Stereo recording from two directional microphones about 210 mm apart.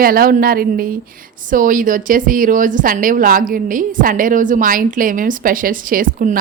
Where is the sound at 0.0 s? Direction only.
45° right (ahead or behind).